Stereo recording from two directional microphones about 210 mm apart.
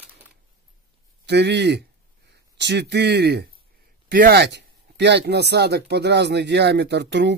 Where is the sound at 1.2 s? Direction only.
55° right (ahead or behind).